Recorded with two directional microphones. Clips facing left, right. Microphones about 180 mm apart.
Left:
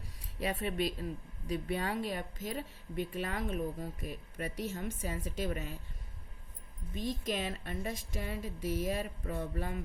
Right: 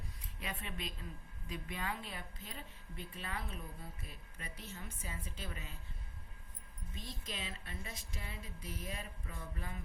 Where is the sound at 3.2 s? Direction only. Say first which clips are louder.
Left 10 dB; 45° left (ahead or behind).